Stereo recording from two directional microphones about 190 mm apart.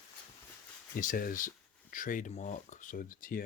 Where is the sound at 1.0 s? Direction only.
45° left (ahead or behind).